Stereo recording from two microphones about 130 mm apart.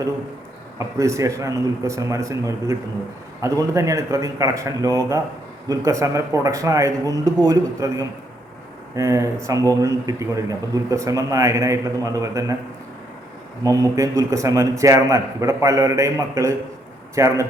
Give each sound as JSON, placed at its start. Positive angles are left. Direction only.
{"t": 0.8, "sound": "a man's voice", "side_deg": -25}
{"t": 13.7, "sound": "a man's voice", "side_deg": -25}